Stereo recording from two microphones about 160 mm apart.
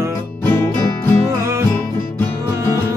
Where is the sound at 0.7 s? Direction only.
15° left (ahead or behind).